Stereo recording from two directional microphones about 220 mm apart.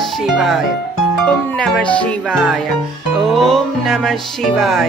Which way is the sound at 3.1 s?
Centre (ahead or behind).